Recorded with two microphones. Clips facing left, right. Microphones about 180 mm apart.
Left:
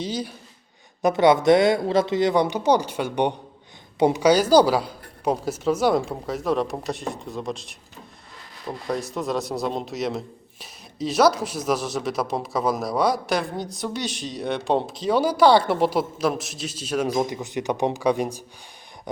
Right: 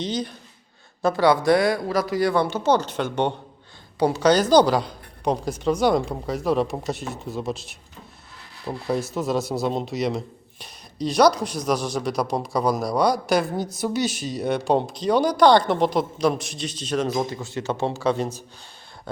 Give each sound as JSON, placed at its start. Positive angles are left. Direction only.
{"t": 0.0, "sound": "speech", "side_deg": 10}
{"t": 1.0, "sound": "a woman's voice", "side_deg": 20}
{"t": 4.2, "sound": "a man's voice", "side_deg": 10}